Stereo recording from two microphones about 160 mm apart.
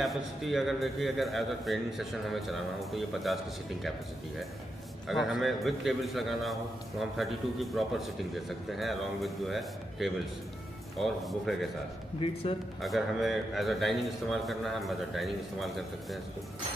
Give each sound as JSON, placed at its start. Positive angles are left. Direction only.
{"t": 0.0, "sound": "a man's voice", "side_deg": 0}
{"t": 5.0, "sound": "a man's voice", "side_deg": 0}
{"t": 12.2, "sound": "a man's voice", "side_deg": 35}
{"t": 12.8, "sound": "a man's voice", "side_deg": 0}